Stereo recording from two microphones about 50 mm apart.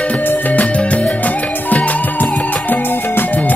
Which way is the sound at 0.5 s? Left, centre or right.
Left.